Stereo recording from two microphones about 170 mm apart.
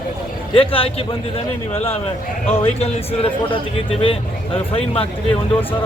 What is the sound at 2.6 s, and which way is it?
Speech, 35° left (ahead or behind).